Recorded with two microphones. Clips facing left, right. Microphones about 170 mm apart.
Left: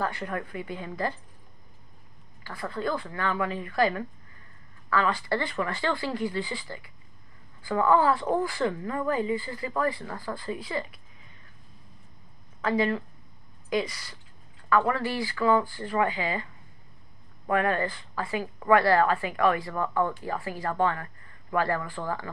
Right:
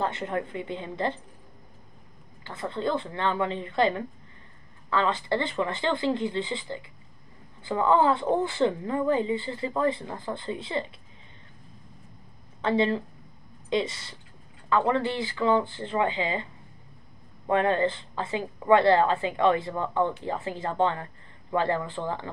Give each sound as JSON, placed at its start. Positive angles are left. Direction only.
{"t": 0.0, "sound": "a woman's voice", "side_deg": -25}
{"t": 2.4, "sound": "a woman's voice", "side_deg": -25}
{"t": 12.6, "sound": "a woman's voice", "side_deg": -25}
{"t": 17.5, "sound": "a woman's voice", "side_deg": -25}